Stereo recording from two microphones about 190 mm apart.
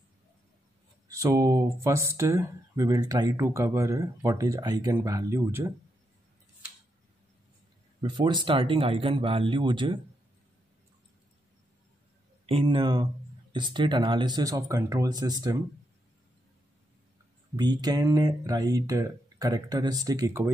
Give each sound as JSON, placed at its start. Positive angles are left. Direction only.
{"t": 1.0, "sound": "speech", "side_deg": -15}
{"t": 8.0, "sound": "speech", "side_deg": -25}
{"t": 12.4, "sound": "speech", "side_deg": -30}
{"t": 17.6, "sound": "speech", "side_deg": -20}